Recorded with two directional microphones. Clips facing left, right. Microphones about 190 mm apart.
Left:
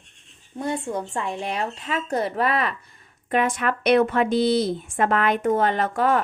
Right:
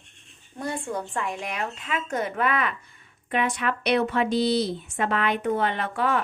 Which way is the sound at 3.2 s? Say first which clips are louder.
Left 3 dB; 45° left (ahead or behind).